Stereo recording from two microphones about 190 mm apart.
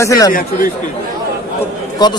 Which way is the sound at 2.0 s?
20° left (ahead or behind).